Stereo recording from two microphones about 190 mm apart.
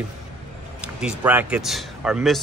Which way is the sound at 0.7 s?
5° right (ahead or behind).